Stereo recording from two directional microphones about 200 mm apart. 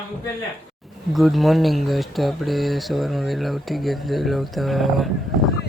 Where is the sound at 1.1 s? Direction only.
Centre (ahead or behind).